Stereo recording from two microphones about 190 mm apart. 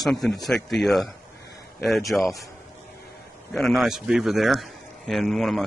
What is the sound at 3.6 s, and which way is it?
Speech, centre (ahead or behind).